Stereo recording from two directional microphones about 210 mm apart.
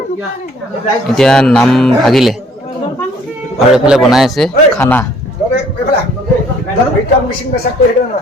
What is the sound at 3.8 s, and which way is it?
A man's voice, centre (ahead or behind).